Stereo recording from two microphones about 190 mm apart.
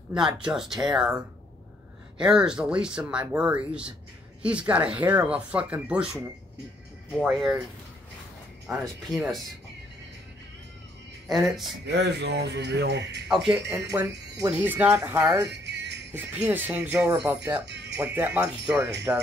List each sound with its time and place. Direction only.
0.4 s speech: 5° right (ahead or behind)
2.1 s speech: 5° right (ahead or behind)
8.6 s speech: centre (ahead or behind)
11.4 s speech: centre (ahead or behind)
11.8 s speech: 65° right (ahead or behind)
13.3 s speech: centre (ahead or behind)
13.7 s speech: 15° right (ahead or behind)
15.6 s music: 65° right (ahead or behind)
16.1 s speech: 10° right (ahead or behind)
17.6 s music: 65° right (ahead or behind)
17.9 s speech: 10° right (ahead or behind)